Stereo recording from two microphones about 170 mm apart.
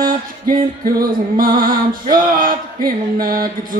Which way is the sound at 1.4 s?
55° right (ahead or behind).